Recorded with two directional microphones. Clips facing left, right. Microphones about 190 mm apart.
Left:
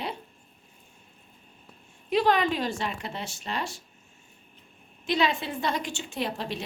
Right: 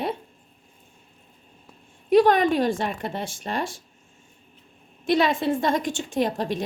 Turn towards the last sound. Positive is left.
turn(degrees=-45)  # may be behind; listen again after turning